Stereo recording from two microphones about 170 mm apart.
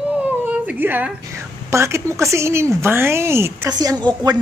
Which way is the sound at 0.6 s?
10° right (ahead or behind).